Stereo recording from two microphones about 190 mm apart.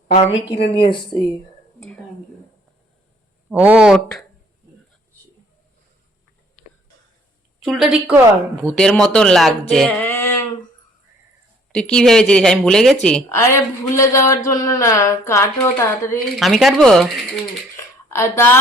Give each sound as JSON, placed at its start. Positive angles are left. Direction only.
{"t": 0.1, "sound": "speech", "side_deg": 30}
{"t": 0.5, "sound": "speech", "side_deg": 65}
{"t": 1.1, "sound": "speech", "side_deg": 5}
{"t": 3.5, "sound": "speech", "side_deg": -10}
{"t": 7.6, "sound": "speech", "side_deg": 0}
{"t": 10.1, "sound": "a sound", "side_deg": 10}
{"t": 11.7, "sound": "speech", "side_deg": 5}
{"t": 13.2, "sound": "speech", "side_deg": 15}
{"t": 16.3, "sound": "speech", "side_deg": 0}
{"t": 17.7, "sound": "a sound", "side_deg": 15}